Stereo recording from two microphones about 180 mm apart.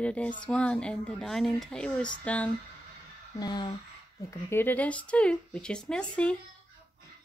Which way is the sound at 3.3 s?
20° left (ahead or behind).